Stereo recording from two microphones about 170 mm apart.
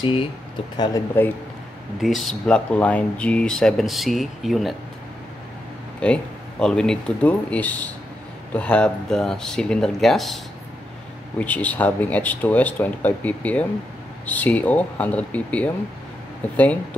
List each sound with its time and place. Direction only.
0.0 s speech: 30° left (ahead or behind)
2.0 s speech: centre (ahead or behind)
5.9 s speech: 5° left (ahead or behind)